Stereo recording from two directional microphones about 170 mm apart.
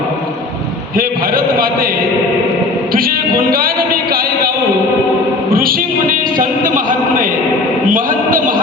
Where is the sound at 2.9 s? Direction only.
60° right (ahead or behind).